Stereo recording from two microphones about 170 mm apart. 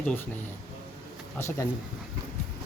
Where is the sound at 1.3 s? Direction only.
15° left (ahead or behind).